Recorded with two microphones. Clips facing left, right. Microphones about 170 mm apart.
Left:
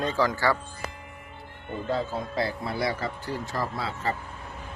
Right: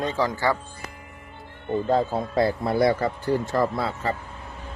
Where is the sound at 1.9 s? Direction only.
50° right (ahead or behind).